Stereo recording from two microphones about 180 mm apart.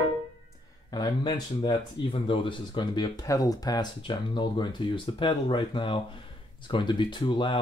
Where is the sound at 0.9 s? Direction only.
25° left (ahead or behind).